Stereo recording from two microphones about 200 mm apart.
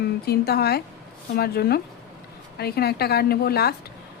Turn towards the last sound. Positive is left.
turn(degrees=50)  # may be behind; listen again after turning